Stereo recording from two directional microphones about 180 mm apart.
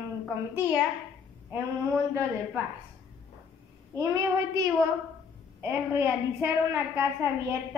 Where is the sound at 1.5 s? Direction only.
15° right (ahead or behind).